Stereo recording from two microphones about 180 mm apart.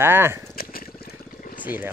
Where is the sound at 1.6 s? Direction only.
10° right (ahead or behind).